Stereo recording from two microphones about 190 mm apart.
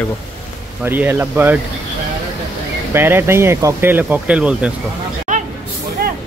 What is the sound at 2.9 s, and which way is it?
Speech, 10° right (ahead or behind).